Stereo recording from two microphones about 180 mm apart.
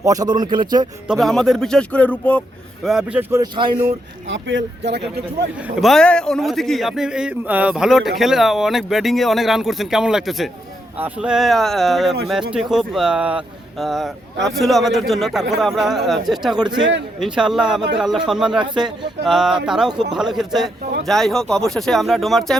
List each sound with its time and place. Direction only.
0.0 s speech: 20° right (ahead or behind)
1.0 s a man's voice: centre (ahead or behind)
2.8 s speech: 5° right (ahead or behind)
3.4 s speech: 25° right (ahead or behind)
4.3 s speech: 90° right
5.8 s a man's voice: 5° left (ahead or behind)